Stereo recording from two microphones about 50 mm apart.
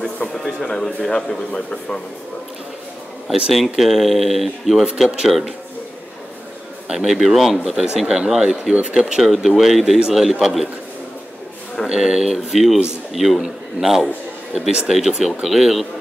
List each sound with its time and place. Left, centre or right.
0.0 s a sound: centre
1.5 s speech: centre
3.3 s speech: centre
6.9 s speech: centre
8.7 s speech: right
9.2 s speech: centre
11.9 s speech: centre